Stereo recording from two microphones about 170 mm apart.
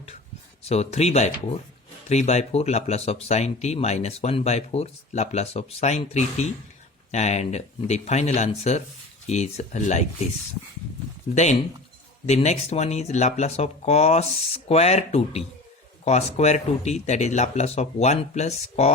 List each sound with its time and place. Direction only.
0.7 s speech: 40° left (ahead or behind)
12.2 s speech: 40° left (ahead or behind)